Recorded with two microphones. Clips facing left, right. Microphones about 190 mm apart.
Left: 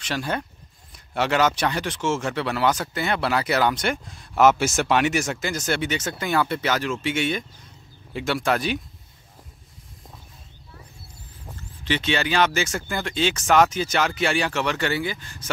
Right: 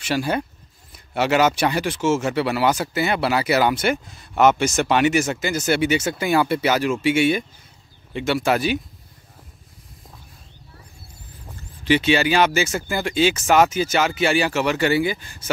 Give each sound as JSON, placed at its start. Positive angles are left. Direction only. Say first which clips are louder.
{"t": 0.0, "sound": "speech", "louder": "right 5 dB", "side_deg": -10}
{"t": 11.8, "sound": "speech", "louder": "right 6 dB", "side_deg": -10}